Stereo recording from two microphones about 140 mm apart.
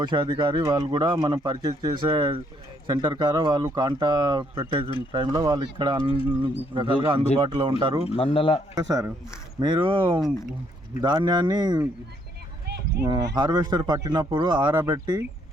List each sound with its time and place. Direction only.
0.0 s speech: 30° right (ahead or behind)
8.1 s speech: 40° left (ahead or behind)
8.7 s speech: 20° right (ahead or behind)
9.6 s speech: 35° right (ahead or behind)
13.1 s speech: 30° right (ahead or behind)